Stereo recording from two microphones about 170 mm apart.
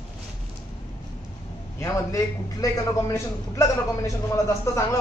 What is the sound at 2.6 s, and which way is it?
A man's voice, 20° left (ahead or behind).